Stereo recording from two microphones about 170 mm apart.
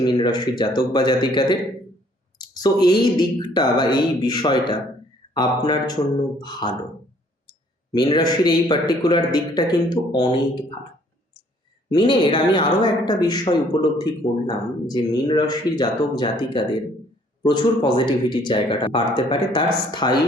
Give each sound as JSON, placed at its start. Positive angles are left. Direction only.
{"t": 0.0, "sound": "speech", "side_deg": 25}
{"t": 8.1, "sound": "speech", "side_deg": 25}
{"t": 11.9, "sound": "speech", "side_deg": 25}